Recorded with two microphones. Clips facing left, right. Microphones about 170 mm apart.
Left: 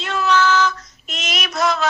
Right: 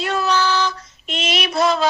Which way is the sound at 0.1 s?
35° right (ahead or behind).